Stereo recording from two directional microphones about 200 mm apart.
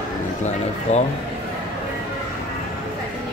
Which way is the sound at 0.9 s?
35° left (ahead or behind).